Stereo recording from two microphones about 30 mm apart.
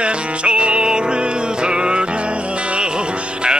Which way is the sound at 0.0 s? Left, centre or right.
Right.